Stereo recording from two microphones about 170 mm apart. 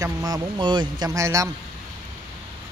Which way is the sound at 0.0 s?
20° right (ahead or behind).